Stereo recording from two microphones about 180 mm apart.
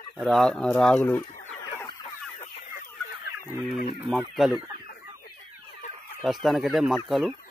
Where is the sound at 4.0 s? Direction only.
5° right (ahead or behind).